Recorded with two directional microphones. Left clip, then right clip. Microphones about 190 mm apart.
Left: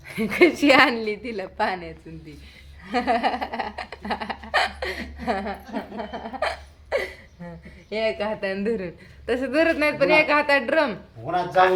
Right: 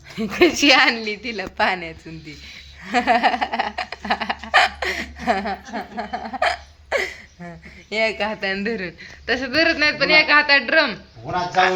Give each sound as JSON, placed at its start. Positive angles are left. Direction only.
{"t": 0.1, "sound": "a woman's voice", "side_deg": 0}
{"t": 1.5, "sound": "laughter", "side_deg": -20}
{"t": 6.1, "sound": "a sound", "side_deg": -35}
{"t": 7.9, "sound": "a man's voice", "side_deg": -20}